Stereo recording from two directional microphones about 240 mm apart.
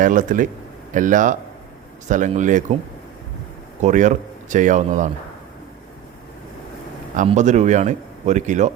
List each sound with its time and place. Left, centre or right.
0.0 s speech: right
3.8 s speech: right
7.2 s speech: right